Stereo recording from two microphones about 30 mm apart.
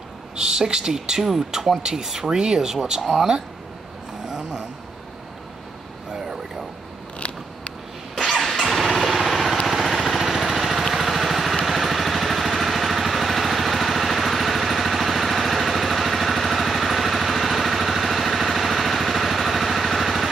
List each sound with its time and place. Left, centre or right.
0.4 s speech: right
4.3 s a sound: right
7.2 s scissors: left
8.3 s vehicle: centre
9.7 s lawn mower: centre
11.0 s vehicle: centre